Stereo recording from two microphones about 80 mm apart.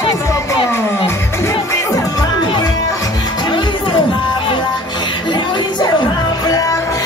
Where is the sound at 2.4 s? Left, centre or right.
Left.